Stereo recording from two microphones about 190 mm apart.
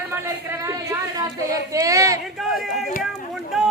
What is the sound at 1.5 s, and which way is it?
Speech, 15° right (ahead or behind).